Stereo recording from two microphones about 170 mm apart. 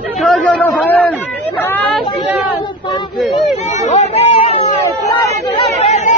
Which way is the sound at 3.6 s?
40° left (ahead or behind).